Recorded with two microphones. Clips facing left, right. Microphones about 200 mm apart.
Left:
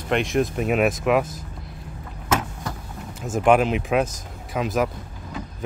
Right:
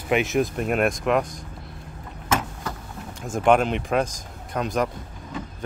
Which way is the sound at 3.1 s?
5° left (ahead or behind).